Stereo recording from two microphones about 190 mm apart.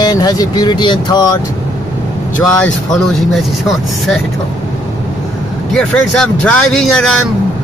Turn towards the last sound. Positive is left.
turn(degrees=5)  # may be behind; listen again after turning